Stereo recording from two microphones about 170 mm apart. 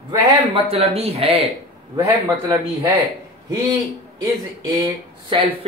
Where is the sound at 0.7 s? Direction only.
35° right (ahead or behind).